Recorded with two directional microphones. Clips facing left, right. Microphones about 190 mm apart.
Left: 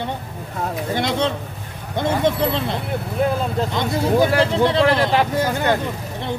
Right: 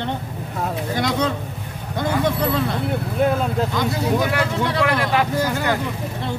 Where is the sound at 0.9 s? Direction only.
25° left (ahead or behind).